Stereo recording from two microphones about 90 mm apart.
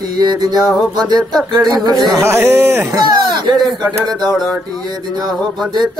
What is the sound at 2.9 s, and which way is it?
Speech, 50° right (ahead or behind).